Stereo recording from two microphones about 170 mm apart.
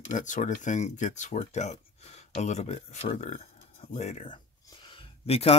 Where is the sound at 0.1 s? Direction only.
45° left (ahead or behind).